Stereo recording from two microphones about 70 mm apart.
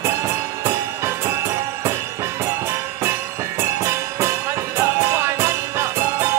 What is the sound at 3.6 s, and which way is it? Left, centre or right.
Music, right.